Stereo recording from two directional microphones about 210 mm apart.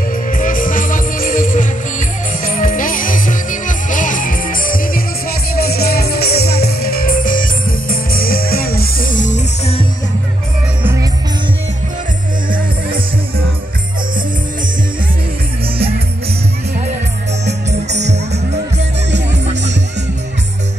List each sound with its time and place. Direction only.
0.3 s music: 40° left (ahead or behind)
10.8 s music: 10° right (ahead or behind)
17.5 s music: 30° right (ahead or behind)